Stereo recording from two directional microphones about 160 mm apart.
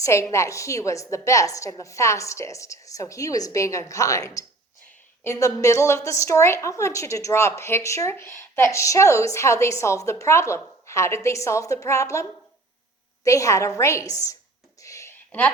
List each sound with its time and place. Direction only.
0.0 s a woman's voice: 20° left (ahead or behind)
13.2 s a woman's voice: 20° left (ahead or behind)
14.8 s a sound: 20° left (ahead or behind)
15.3 s a woman's voice: 10° left (ahead or behind)